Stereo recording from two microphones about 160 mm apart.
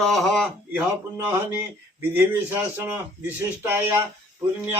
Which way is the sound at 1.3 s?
15° right (ahead or behind).